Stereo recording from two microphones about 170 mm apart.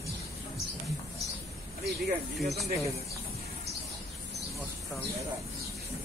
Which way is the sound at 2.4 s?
Centre (ahead or behind).